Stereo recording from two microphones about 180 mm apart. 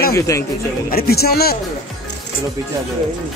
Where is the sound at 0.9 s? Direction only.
60° left (ahead or behind).